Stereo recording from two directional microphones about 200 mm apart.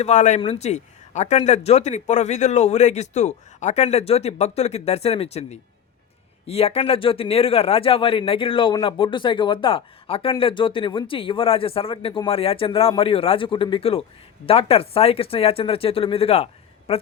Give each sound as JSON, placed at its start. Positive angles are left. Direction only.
{"t": 0.0, "sound": "a man's voice", "side_deg": 35}